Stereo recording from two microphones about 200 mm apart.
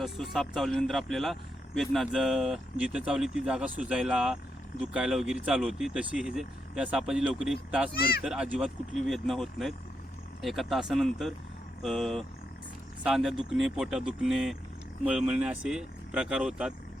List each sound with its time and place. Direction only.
0.0 s speech: centre (ahead or behind)
7.9 s speech: 50° left (ahead or behind)
8.2 s speech: 5° right (ahead or behind)